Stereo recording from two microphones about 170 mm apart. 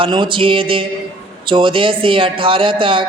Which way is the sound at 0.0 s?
30° right (ahead or behind).